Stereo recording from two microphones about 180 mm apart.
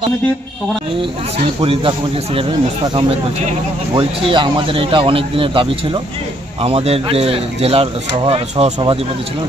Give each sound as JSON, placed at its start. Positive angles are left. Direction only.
{"t": 1.6, "sound": "a man's voice", "side_deg": -30}